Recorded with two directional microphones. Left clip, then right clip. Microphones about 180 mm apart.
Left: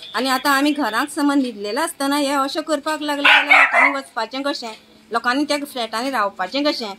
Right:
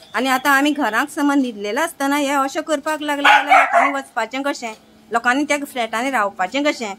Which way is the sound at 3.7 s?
35° right (ahead or behind).